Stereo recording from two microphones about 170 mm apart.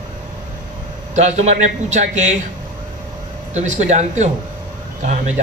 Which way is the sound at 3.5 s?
45° right (ahead or behind).